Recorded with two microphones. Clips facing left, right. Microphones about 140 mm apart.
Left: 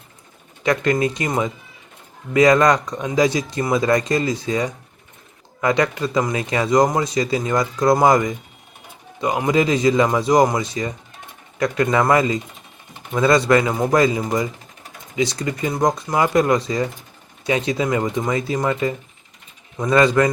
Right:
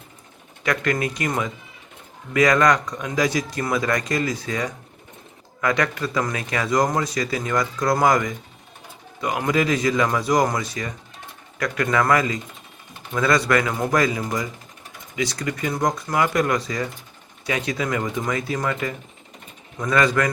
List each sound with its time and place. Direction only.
0.6 s speech: 25° left (ahead or behind)
2.3 s speech: 25° left (ahead or behind)
9.5 s speech: 25° left (ahead or behind)